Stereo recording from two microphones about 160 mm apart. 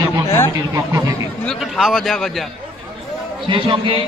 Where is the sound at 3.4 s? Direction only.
30° right (ahead or behind).